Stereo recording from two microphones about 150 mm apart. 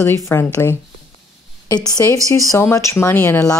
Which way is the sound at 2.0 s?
20° left (ahead or behind).